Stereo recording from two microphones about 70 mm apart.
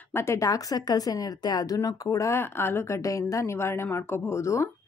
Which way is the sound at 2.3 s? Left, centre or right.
Left.